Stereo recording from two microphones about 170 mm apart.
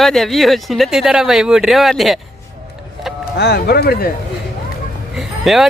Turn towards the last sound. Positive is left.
turn(degrees=0)  # may be behind; listen again after turning